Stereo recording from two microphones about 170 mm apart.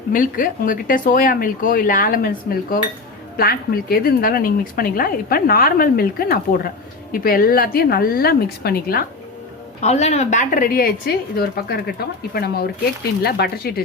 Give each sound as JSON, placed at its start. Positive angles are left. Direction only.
{"t": 0.1, "sound": "speech", "side_deg": 55}
{"t": 9.8, "sound": "speech", "side_deg": 40}